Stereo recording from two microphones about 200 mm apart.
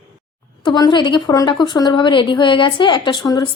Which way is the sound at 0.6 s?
20° left (ahead or behind).